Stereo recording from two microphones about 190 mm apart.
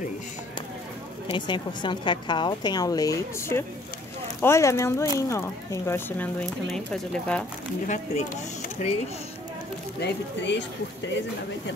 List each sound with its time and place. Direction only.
1.2 s a woman's voice: 25° left (ahead or behind); by 7.4 s 5° left (ahead or behind)
7.8 s speech: 40° left (ahead or behind)
9.9 s speech: 65° left (ahead or behind)